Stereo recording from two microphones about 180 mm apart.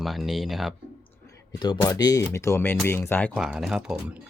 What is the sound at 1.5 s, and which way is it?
Speech, 25° left (ahead or behind).